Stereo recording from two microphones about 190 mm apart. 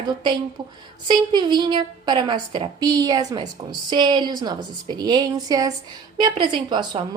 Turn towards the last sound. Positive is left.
turn(degrees=-25)  # may be behind; listen again after turning